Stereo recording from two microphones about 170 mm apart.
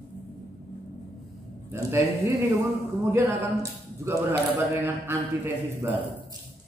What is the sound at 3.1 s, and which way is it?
Speech, 20° right (ahead or behind).